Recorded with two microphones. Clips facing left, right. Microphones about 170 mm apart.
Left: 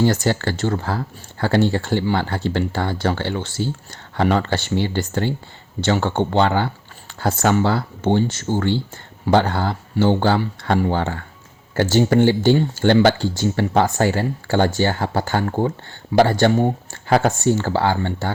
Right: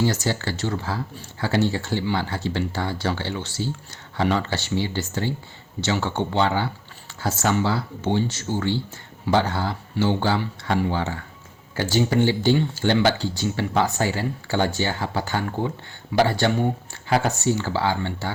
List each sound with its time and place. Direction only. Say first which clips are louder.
0.0 s speech: left 5 dB; 55° left (ahead or behind)